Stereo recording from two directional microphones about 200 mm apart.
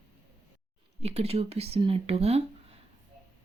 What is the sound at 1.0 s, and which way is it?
Speech, 30° right (ahead or behind).